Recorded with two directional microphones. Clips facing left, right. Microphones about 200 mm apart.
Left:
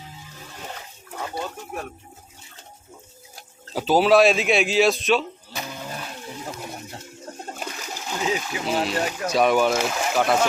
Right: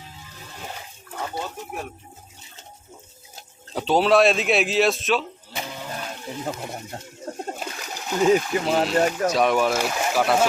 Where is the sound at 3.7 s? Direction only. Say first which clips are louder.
Left 1 dB; 5° left (ahead or behind).